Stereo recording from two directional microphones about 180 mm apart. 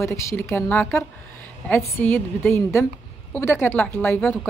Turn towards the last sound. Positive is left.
turn(degrees=10)  # may be behind; listen again after turning